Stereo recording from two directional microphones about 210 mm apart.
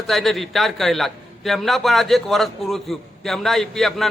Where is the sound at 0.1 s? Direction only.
Centre (ahead or behind).